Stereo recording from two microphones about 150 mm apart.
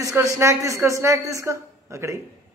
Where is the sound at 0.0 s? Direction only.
20° right (ahead or behind).